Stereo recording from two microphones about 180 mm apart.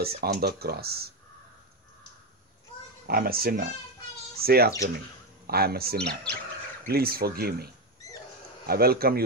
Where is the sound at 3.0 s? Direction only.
55° right (ahead or behind).